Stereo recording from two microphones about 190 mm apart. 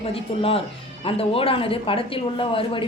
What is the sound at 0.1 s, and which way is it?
Speech, 30° left (ahead or behind).